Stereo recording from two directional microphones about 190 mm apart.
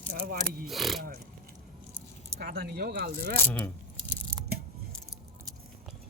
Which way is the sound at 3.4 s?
10° left (ahead or behind).